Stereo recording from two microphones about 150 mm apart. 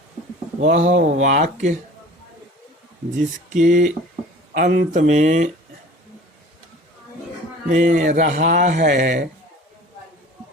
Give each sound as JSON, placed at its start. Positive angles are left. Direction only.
{"t": 0.6, "sound": "speech", "side_deg": -50}
{"t": 3.5, "sound": "speech", "side_deg": -60}
{"t": 7.7, "sound": "speech", "side_deg": -55}